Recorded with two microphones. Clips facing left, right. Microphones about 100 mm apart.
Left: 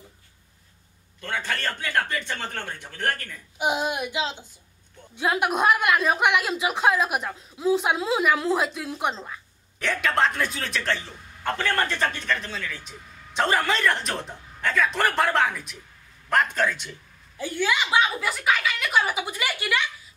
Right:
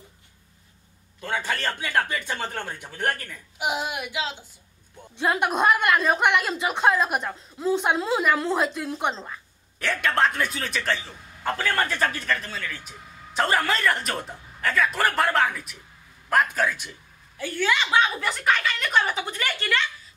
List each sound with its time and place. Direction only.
1.2 s speech: 10° right (ahead or behind)
3.5 s a child's voice: 20° left (ahead or behind)
5.1 s a woman's voice: centre (ahead or behind)
17.4 s speech: 15° left (ahead or behind)